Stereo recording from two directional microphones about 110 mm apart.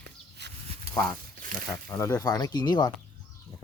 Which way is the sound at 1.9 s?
30° left (ahead or behind).